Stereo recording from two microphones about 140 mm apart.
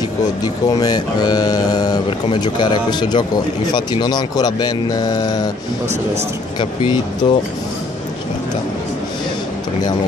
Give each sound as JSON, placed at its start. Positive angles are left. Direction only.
{"t": 0.7, "sound": "speech", "side_deg": 30}
{"t": 6.6, "sound": "speech", "side_deg": 35}